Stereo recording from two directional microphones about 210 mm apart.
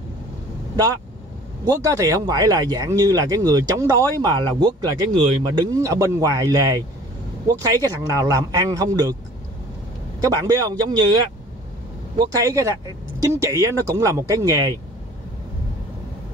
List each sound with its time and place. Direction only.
1.6 s speech: 15° right (ahead or behind)
10.3 s a man's voice: 20° right (ahead or behind)